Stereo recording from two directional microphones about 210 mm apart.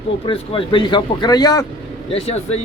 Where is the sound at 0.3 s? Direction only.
25° left (ahead or behind).